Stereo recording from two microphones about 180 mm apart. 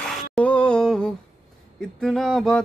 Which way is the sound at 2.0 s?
Centre (ahead or behind).